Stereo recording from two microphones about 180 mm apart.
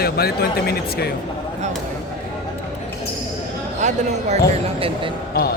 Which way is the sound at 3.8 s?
40° right (ahead or behind).